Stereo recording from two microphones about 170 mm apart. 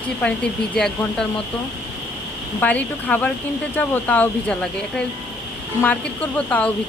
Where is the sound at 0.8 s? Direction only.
5° left (ahead or behind).